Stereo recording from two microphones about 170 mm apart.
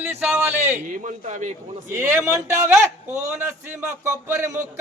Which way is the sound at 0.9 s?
45° right (ahead or behind).